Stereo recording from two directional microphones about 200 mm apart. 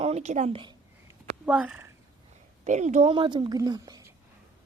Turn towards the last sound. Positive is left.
turn(degrees=-20)  # may be behind; listen again after turning